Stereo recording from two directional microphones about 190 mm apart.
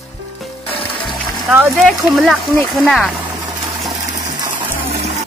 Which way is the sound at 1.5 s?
5° right (ahead or behind).